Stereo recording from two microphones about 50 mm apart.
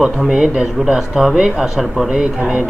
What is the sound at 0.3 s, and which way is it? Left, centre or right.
Speech, centre.